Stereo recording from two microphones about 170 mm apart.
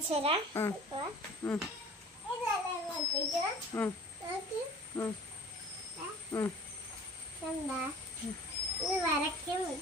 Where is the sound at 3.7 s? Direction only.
15° left (ahead or behind).